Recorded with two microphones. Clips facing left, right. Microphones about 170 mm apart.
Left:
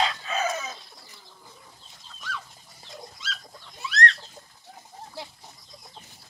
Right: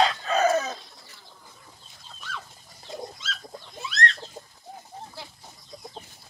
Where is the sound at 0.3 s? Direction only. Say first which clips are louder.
Right 7 dB; 40° right (ahead or behind).